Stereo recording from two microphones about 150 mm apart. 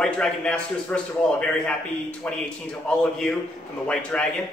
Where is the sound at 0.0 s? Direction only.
5° left (ahead or behind).